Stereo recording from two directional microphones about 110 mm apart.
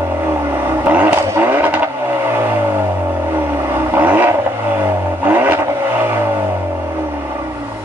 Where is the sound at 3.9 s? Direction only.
15° right (ahead or behind).